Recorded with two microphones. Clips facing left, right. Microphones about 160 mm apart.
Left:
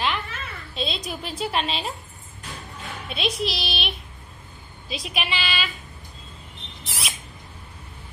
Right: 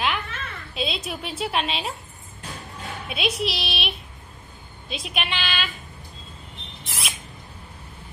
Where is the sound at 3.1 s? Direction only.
5° right (ahead or behind).